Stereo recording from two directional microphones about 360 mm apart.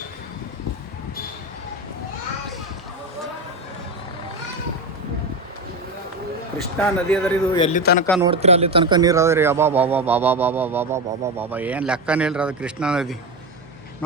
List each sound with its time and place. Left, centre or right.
6.7 s speech: centre
7.5 s a man's voice: centre
7.8 s speech: left
8.2 s speech: centre